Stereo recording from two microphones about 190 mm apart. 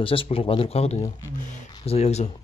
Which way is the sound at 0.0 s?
30° left (ahead or behind).